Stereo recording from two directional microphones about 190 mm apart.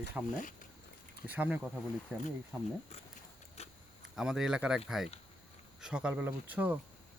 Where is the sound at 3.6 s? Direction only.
35° left (ahead or behind).